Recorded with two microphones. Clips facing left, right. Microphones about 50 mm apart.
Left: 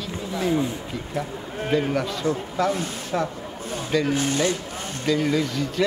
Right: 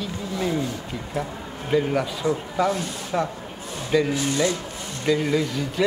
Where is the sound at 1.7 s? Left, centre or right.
Centre.